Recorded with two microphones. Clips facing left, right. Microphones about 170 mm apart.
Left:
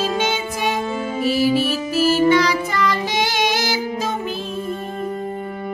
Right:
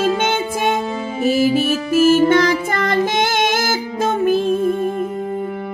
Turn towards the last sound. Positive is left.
turn(degrees=-50)  # may be behind; listen again after turning